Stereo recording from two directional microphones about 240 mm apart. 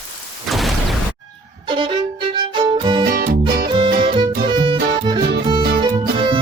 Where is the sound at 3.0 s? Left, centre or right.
Right.